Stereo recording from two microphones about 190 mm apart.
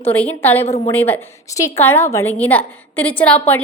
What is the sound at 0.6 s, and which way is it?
Speech, 35° left (ahead or behind).